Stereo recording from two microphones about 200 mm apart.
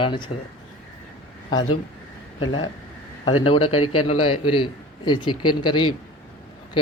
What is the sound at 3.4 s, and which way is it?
Speech, 25° left (ahead or behind).